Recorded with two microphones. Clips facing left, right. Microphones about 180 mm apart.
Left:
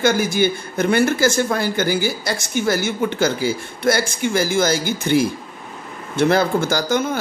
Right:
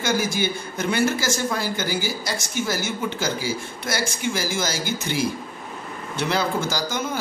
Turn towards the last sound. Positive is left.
turn(degrees=60)  # may be behind; listen again after turning